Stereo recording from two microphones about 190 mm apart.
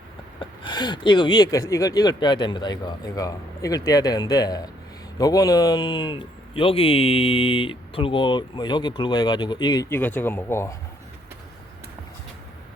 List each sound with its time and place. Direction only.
0.3 s a man's voice: 25° left (ahead or behind)
9.9 s speech: 10° left (ahead or behind)